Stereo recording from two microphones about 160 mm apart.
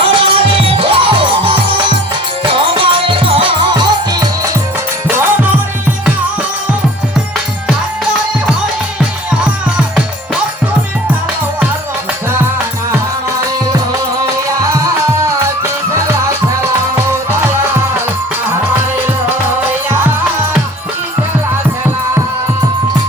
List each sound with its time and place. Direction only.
0.0 s music: 35° right (ahead or behind)
5.0 s music: 15° right (ahead or behind)
9.3 s music: 5° right (ahead or behind)
15.2 s music: 15° right (ahead or behind)